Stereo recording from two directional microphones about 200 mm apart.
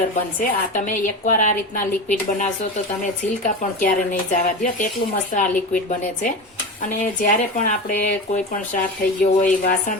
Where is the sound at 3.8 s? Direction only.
40° left (ahead or behind).